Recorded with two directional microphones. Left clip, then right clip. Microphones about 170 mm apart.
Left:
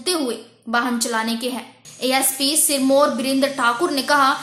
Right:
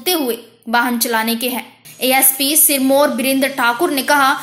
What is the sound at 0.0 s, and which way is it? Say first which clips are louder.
Speech: right 4 dB; 15° right (ahead or behind).